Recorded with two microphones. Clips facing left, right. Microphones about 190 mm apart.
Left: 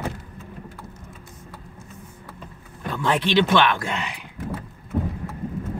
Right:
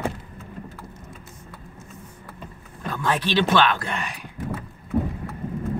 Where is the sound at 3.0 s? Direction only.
20° left (ahead or behind).